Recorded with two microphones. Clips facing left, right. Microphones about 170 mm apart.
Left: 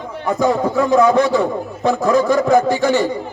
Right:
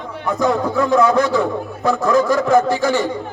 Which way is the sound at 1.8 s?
20° left (ahead or behind).